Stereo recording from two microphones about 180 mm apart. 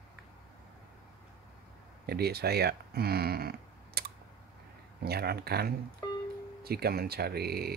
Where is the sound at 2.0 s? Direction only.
60° right (ahead or behind).